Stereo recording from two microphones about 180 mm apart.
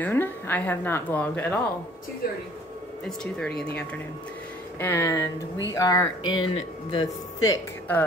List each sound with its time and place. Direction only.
0.0 s a woman's voice: 10° left (ahead or behind)
3.1 s speech: 5° left (ahead or behind)
4.7 s speech: 15° left (ahead or behind)